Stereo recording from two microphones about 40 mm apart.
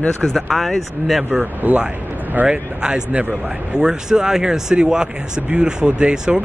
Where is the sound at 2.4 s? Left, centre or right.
Right.